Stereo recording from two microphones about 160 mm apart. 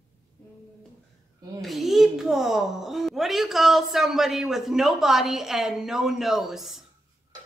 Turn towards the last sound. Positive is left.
turn(degrees=0)  # may be behind; listen again after turning